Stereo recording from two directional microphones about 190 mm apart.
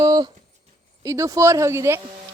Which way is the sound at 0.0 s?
20° right (ahead or behind).